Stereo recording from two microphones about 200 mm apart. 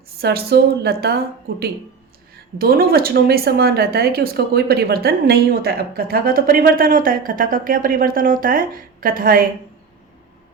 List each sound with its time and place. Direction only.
0.2 s a woman's voice: 55° right (ahead or behind)